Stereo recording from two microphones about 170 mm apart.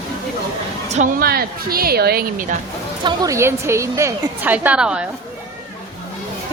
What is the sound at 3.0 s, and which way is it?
A woman's voice, 20° right (ahead or behind).